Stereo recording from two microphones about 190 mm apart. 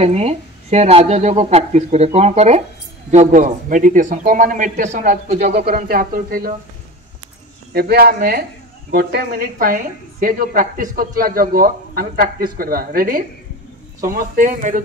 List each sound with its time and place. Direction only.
0.0 s a woman's voice: 35° right (ahead or behind)
5.7 s a woman's voice: 50° right (ahead or behind)
7.7 s a woman's voice: 55° right (ahead or behind)